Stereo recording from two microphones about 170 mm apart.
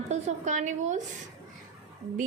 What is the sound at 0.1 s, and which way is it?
Speech, 45° right (ahead or behind).